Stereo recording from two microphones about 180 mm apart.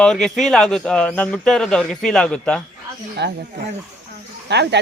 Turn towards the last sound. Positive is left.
turn(degrees=-70)  # may be behind; listen again after turning